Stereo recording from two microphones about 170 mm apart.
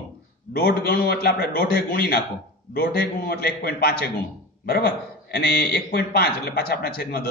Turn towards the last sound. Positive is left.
turn(degrees=65)  # may be behind; listen again after turning